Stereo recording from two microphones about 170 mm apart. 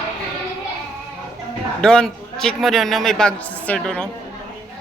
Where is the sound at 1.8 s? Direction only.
5° left (ahead or behind).